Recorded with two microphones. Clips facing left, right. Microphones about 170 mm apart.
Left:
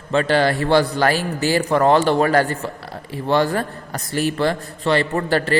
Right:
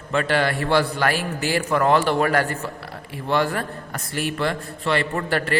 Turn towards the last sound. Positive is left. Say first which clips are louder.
# left 4 dB
turn(degrees=30)  # may be behind; listen again after turning